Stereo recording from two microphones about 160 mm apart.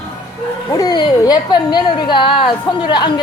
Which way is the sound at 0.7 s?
25° left (ahead or behind).